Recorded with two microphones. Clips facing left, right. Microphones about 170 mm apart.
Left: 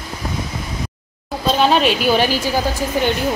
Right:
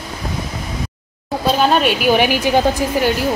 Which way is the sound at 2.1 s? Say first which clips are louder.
Right 2 dB; 15° right (ahead or behind).